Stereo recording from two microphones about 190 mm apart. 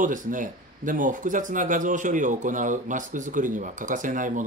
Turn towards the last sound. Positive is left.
turn(degrees=-45)  # may be behind; listen again after turning